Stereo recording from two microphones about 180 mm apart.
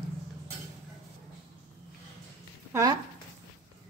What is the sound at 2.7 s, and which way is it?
Speech, 15° right (ahead or behind).